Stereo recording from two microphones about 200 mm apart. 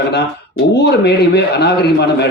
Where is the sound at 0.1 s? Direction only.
55° left (ahead or behind).